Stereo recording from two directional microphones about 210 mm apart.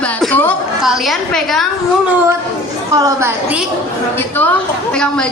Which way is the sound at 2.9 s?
15° right (ahead or behind).